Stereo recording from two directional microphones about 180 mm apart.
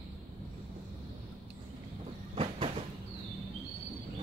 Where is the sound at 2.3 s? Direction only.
35° right (ahead or behind).